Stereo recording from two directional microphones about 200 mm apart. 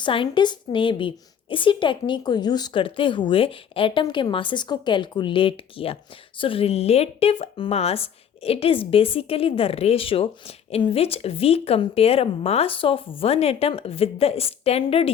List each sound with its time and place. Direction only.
0.0 s a woman's voice: 25° left (ahead or behind)